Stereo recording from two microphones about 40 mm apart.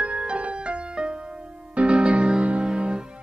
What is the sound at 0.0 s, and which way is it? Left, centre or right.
Music, right.